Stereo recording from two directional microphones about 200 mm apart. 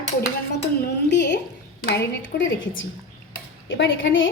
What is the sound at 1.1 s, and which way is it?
A woman's voice, 60° left (ahead or behind).